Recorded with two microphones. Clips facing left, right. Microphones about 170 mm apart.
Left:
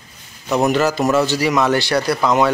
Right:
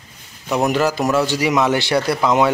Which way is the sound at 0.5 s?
10° right (ahead or behind).